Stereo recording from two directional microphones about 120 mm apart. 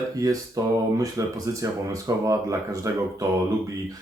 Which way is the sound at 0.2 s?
30° right (ahead or behind).